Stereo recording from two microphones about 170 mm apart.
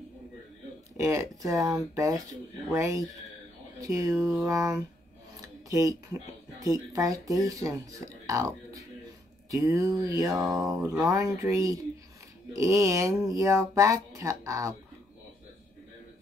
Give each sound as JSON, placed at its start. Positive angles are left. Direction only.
{"t": 0.9, "sound": "speech", "side_deg": -15}